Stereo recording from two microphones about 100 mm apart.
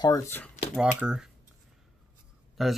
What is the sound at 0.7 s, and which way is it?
Speech, 10° right (ahead or behind).